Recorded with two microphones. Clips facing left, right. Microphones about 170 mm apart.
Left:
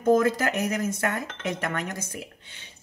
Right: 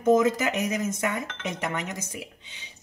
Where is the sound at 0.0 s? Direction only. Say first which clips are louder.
Even; 20° right (ahead or behind).